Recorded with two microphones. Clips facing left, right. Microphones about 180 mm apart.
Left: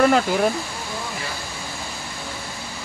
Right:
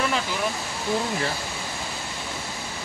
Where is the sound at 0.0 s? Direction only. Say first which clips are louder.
Left 9 dB; 50° left (ahead or behind).